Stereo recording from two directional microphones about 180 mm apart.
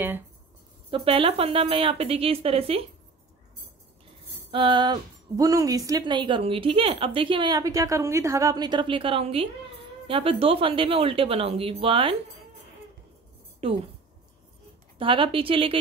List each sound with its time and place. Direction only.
0.8 s a woman's voice: 30° right (ahead or behind)
4.5 s a woman's voice: 25° right (ahead or behind)
13.6 s a woman's voice: 35° right (ahead or behind)
15.0 s speech: 30° right (ahead or behind)